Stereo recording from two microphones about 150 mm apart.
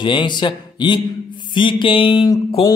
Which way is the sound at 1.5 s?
35° left (ahead or behind).